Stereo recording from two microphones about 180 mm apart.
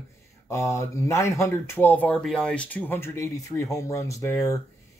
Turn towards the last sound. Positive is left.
turn(degrees=15)  # may be behind; listen again after turning